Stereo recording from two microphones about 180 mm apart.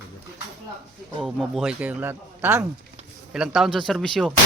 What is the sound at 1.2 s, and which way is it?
Speech, centre (ahead or behind).